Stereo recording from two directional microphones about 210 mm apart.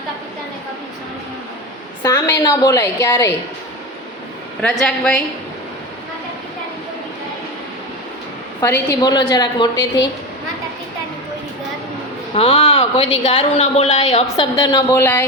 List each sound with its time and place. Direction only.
2.0 s a woman's voice: 15° left (ahead or behind)
4.6 s a woman's voice: centre (ahead or behind)
8.6 s a woman's voice: 15° left (ahead or behind)
12.3 s a woman's voice: 30° left (ahead or behind)
15.0 s a woman's voice: 10° left (ahead or behind)